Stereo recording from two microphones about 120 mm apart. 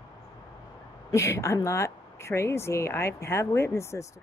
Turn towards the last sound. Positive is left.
turn(degrees=25)  # may be behind; listen again after turning